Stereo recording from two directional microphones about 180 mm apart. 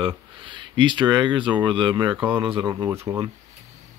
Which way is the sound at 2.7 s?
15° right (ahead or behind).